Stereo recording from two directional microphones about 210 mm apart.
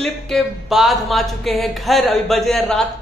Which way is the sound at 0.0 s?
Centre (ahead or behind).